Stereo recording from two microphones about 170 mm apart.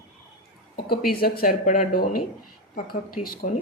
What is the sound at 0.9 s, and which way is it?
Speech, 60° left (ahead or behind).